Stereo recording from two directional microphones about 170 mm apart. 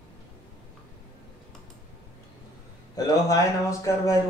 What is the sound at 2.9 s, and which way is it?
Speech, 20° left (ahead or behind).